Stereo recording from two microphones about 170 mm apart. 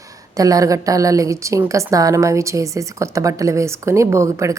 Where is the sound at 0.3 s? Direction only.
20° right (ahead or behind).